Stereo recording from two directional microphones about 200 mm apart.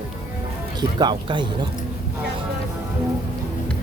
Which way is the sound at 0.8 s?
20° right (ahead or behind).